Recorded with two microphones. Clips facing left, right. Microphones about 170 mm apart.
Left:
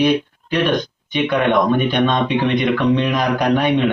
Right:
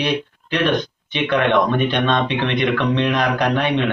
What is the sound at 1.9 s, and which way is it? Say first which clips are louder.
Speech: left 2 dB; 10° left (ahead or behind).